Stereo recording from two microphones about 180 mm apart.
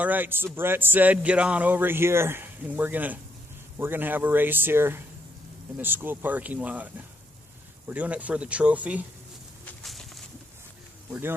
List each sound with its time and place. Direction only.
0.0 s speech: 10° right (ahead or behind)
9.8 s a sound: centre (ahead or behind)
11.1 s speech: 10° right (ahead or behind)